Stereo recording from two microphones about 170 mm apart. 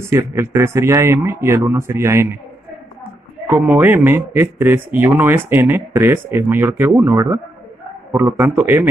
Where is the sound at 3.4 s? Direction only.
10° right (ahead or behind).